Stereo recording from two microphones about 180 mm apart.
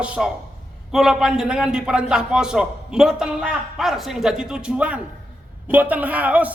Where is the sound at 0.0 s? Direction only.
5° right (ahead or behind).